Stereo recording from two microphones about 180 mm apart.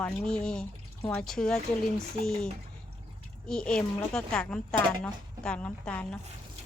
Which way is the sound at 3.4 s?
5° left (ahead or behind).